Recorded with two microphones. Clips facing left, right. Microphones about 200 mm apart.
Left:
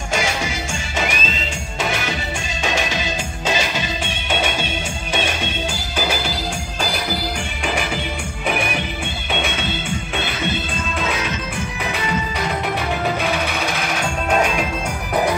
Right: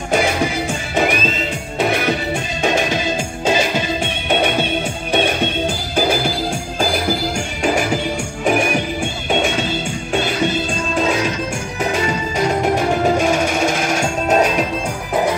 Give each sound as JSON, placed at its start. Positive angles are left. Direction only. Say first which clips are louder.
{"t": 0.1, "sound": "music", "louder": "right 6 dB", "side_deg": -55}